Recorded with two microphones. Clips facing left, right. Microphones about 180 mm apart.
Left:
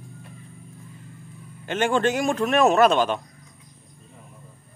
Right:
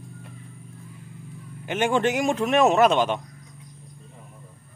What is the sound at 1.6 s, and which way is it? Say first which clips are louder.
Speech: even; 15° right (ahead or behind).